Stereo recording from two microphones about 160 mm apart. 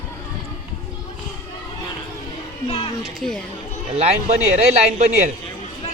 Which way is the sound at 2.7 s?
35° left (ahead or behind).